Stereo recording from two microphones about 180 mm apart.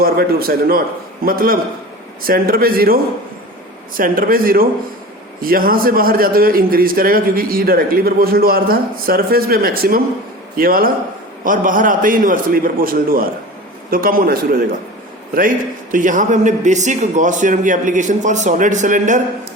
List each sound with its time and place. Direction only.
0.0 s a man's voice: 55° right (ahead or behind)